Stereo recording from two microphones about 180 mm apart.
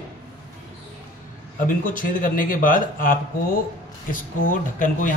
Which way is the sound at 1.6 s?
50° left (ahead or behind).